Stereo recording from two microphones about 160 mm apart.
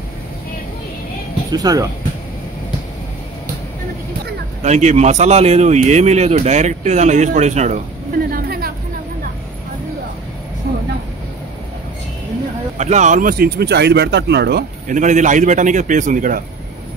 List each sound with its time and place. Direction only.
1.5 s speech: 25° right (ahead or behind)
4.6 s speech: 45° right (ahead or behind)
8.3 s a sound: 70° right (ahead or behind)
12.7 s speech: 45° right (ahead or behind); by 14.6 s 90° right
14.9 s speech: 50° right (ahead or behind)